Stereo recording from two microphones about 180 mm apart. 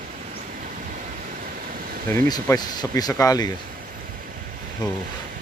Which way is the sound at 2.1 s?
20° left (ahead or behind).